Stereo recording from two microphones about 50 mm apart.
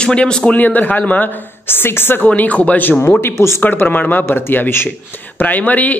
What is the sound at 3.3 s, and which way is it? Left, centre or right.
Speech, left.